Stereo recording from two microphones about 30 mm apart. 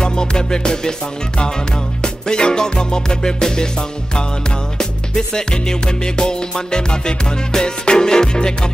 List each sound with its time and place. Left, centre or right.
0.0 s music: left
2.0 s music: left
4.7 s music: left